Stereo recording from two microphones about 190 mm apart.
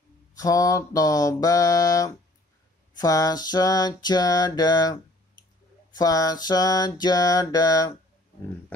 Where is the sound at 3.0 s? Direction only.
20° left (ahead or behind).